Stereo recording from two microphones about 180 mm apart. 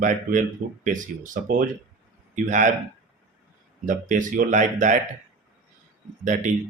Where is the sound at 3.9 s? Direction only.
45° right (ahead or behind).